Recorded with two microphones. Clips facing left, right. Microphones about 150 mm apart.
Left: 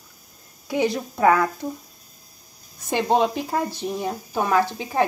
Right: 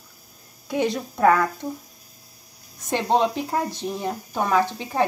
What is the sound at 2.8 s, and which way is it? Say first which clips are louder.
Speech: left 1 dB; 5° left (ahead or behind).